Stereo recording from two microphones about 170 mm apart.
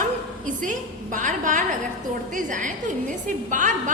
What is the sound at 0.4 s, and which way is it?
A woman's voice, 50° right (ahead or behind).